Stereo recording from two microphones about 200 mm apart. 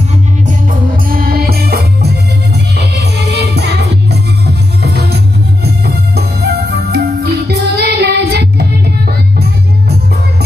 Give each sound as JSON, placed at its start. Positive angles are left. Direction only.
{"t": 1.0, "sound": "music", "side_deg": -45}